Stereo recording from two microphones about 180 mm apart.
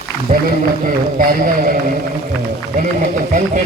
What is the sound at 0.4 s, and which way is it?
Speech, 50° right (ahead or behind).